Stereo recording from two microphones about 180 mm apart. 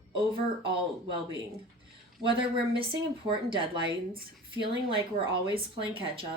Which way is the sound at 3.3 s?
30° right (ahead or behind).